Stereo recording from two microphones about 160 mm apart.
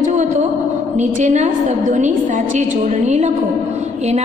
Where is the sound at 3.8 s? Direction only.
45° right (ahead or behind).